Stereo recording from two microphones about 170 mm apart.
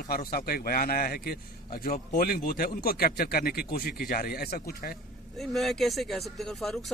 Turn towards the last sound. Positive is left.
turn(degrees=0)  # may be behind; listen again after turning